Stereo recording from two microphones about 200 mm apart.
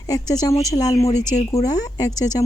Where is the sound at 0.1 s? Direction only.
20° left (ahead or behind).